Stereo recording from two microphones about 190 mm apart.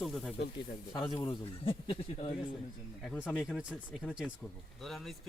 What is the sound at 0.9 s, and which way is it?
A man's voice, 25° left (ahead or behind).